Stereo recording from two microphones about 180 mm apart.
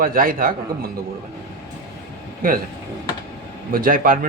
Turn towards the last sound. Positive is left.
turn(degrees=-50)  # may be behind; listen again after turning